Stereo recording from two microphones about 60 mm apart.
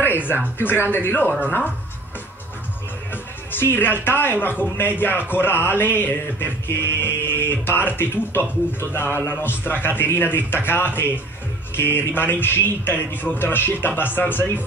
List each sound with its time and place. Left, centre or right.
0.6 s speech: left
3.5 s speech: left